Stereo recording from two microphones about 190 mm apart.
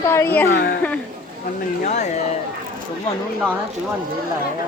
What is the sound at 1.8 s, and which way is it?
Speech, 40° left (ahead or behind).